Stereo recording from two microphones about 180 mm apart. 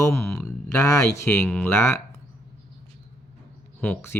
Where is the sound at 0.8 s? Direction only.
20° left (ahead or behind).